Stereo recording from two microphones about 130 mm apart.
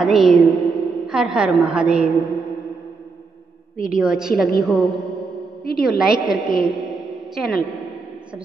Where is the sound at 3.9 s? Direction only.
5° right (ahead or behind).